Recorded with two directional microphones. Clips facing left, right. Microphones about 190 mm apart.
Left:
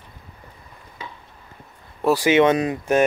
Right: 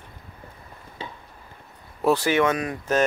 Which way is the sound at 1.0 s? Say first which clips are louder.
Right 1 dB; 30° right (ahead or behind).